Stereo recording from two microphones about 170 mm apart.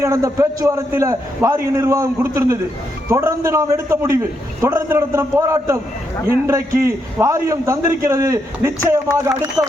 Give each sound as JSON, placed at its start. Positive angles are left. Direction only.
{"t": 0.0, "sound": "a man's voice", "side_deg": -20}